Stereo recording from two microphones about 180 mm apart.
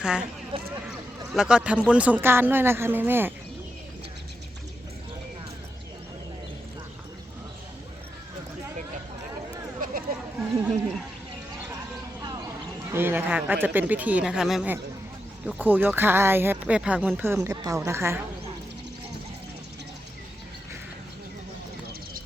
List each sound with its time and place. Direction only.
0.0 s speech: 5° right (ahead or behind)
0.5 s speech: 30° right (ahead or behind)
1.3 s speech: 5° right (ahead or behind)
10.7 s speech: centre (ahead or behind)
12.9 s speech: 10° right (ahead or behind)